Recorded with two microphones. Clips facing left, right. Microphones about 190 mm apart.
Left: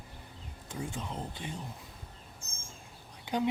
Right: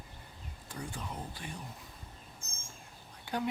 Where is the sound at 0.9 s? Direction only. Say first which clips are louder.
Left 3 dB; 20° left (ahead or behind).